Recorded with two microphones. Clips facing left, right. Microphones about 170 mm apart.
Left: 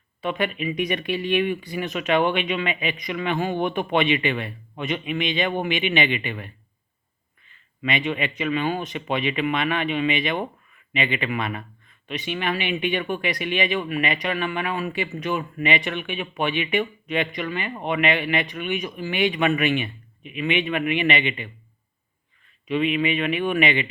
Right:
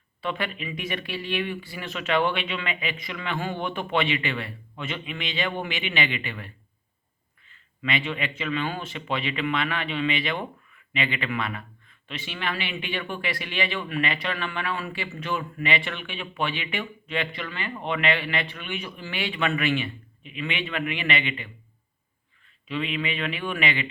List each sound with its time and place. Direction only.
0.2 s a man's voice: 15° left (ahead or behind)
22.6 s a man's voice: 15° left (ahead or behind)